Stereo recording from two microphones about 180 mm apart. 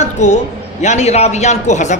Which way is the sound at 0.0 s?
40° left (ahead or behind).